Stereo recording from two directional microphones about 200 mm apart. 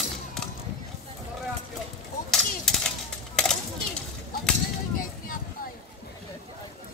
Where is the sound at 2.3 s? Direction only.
Centre (ahead or behind).